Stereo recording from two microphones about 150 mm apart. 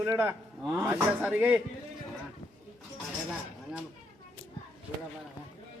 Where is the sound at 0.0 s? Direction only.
15° right (ahead or behind).